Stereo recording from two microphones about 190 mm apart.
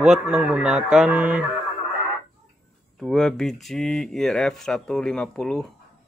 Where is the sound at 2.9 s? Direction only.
Centre (ahead or behind).